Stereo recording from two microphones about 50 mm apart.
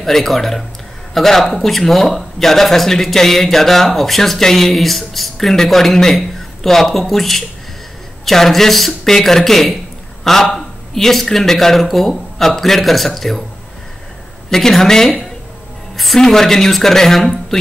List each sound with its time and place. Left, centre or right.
0.0 s speech: centre
14.5 s a woman's voice: centre